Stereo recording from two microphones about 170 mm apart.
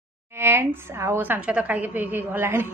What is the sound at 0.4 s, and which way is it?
A woman's voice, 15° right (ahead or behind).